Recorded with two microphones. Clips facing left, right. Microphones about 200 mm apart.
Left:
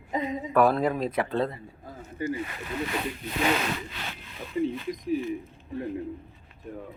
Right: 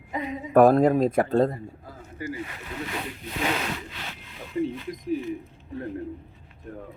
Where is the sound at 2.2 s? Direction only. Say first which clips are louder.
Left 4 dB; 25° left (ahead or behind).